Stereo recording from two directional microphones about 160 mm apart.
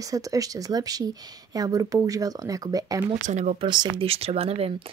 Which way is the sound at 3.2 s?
45° right (ahead or behind).